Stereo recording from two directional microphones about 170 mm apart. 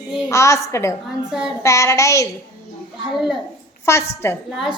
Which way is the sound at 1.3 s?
5° right (ahead or behind).